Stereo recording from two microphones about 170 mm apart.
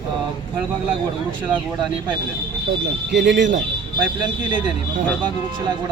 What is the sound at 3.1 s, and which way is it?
Speech, 90° right.